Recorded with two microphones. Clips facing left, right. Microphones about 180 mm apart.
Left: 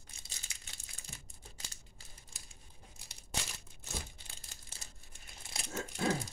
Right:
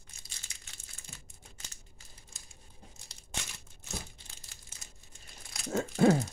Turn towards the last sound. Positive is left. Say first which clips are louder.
# right 10 dB
turn(degrees=-65)  # may be behind; listen again after turning